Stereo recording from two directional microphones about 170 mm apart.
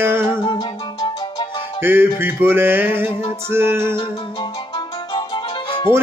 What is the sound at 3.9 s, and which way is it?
Music, 25° left (ahead or behind).